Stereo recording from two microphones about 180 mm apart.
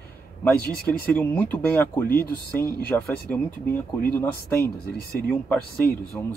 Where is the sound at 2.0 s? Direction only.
55° left (ahead or behind).